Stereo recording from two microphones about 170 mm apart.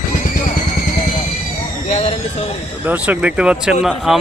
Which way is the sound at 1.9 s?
35° left (ahead or behind).